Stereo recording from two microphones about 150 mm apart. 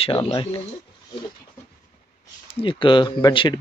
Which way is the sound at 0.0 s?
40° left (ahead or behind).